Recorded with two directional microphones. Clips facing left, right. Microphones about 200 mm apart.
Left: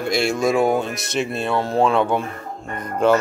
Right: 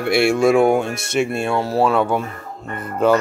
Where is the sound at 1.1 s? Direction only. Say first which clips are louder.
Right 3 dB; 10° right (ahead or behind).